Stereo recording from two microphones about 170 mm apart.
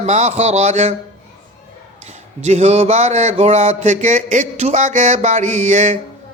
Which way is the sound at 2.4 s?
40° right (ahead or behind).